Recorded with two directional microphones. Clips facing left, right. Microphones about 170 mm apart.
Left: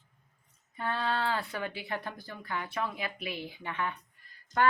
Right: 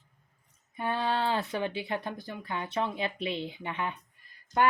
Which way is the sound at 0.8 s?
15° right (ahead or behind).